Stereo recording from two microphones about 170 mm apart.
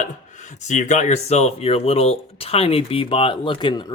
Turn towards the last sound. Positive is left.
turn(degrees=30)  # may be behind; listen again after turning